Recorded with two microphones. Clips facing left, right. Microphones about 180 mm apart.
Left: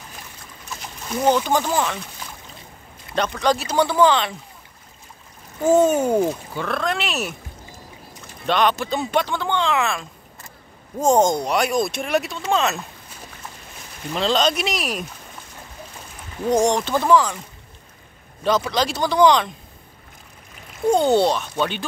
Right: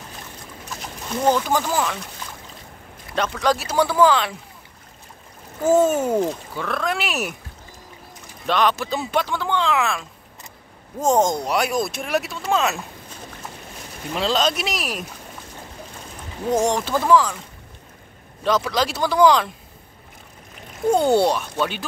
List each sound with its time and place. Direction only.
1.3 s speech: centre (ahead or behind)
3.2 s speech: 5° right (ahead or behind)
5.7 s speech: 5° right (ahead or behind)
8.5 s speech: centre (ahead or behind)
14.1 s speech: 5° right (ahead or behind)
16.4 s speech: 5° right (ahead or behind)
18.4 s speech: centre (ahead or behind)
20.9 s speech: 10° right (ahead or behind)